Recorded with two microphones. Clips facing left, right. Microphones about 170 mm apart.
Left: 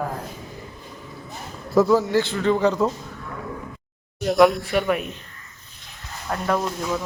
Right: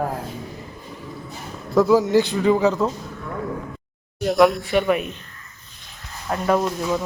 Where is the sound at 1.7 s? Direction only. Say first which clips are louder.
Right 1 dB; 5° right (ahead or behind).